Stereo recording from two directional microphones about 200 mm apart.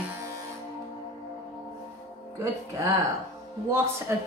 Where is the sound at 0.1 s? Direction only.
15° right (ahead or behind).